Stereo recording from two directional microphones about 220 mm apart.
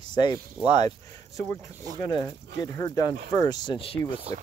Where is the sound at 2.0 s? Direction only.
15° left (ahead or behind).